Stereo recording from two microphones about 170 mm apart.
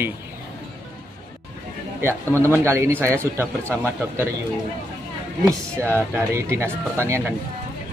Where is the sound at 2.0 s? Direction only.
15° right (ahead or behind).